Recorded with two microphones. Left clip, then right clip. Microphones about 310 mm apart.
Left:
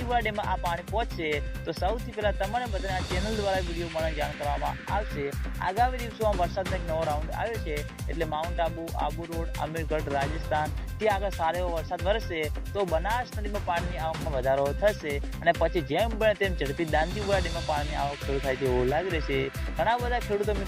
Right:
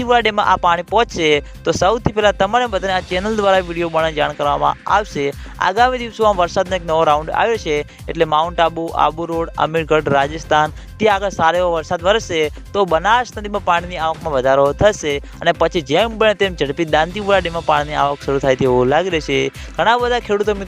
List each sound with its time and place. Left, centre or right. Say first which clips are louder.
0.0 s speech: right 14 dB; right
4.0 s speech: right 11 dB; right